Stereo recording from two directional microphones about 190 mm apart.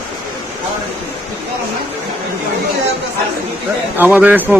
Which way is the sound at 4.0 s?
10° right (ahead or behind).